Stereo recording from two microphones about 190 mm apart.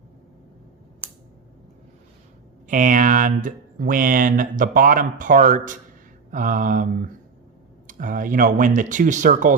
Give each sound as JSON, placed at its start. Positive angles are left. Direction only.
{"t": 2.6, "sound": "speech", "side_deg": -45}